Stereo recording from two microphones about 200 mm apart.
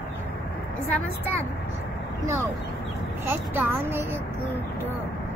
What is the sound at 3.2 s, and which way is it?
Speech, 10° right (ahead or behind).